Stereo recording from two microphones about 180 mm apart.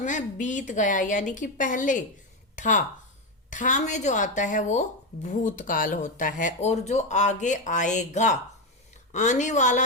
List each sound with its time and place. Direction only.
0.0 s a woman's voice: 45° left (ahead or behind)